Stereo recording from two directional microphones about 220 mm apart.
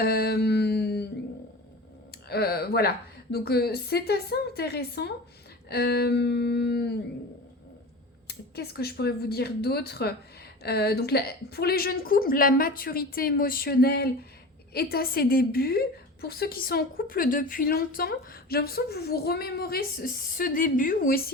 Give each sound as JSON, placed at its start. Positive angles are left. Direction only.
{"t": 0.0, "sound": "mantra", "side_deg": 45}
{"t": 2.3, "sound": "a woman's voice", "side_deg": 45}
{"t": 8.3, "sound": "a woman's voice", "side_deg": 45}